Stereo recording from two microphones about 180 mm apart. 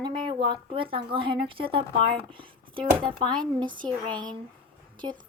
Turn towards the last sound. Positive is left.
turn(degrees=-25)  # may be behind; listen again after turning